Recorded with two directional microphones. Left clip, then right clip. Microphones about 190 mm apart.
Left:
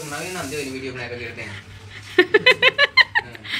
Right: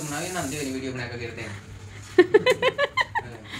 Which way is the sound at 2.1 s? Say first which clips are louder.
Left 3 dB; 10° right (ahead or behind).